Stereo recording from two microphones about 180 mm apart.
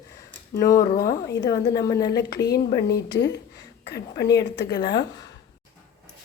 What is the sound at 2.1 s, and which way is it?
A woman's voice, 65° left (ahead or behind).